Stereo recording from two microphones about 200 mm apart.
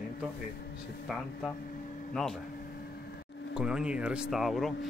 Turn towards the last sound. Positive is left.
turn(degrees=0)  # may be behind; listen again after turning